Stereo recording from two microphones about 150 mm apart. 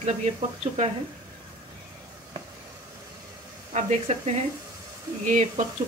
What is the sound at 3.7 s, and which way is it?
A woman's voice, 55° right (ahead or behind).